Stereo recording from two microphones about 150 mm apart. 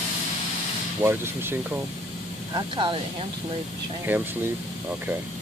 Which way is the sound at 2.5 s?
30° right (ahead or behind).